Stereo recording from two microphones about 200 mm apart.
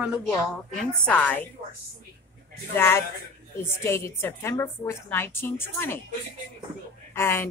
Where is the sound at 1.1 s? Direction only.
10° left (ahead or behind).